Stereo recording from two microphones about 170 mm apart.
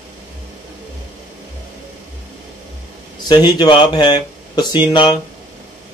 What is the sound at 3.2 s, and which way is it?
Speech, 25° left (ahead or behind).